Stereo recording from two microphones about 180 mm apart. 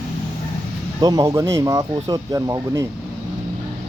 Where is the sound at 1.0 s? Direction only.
20° right (ahead or behind).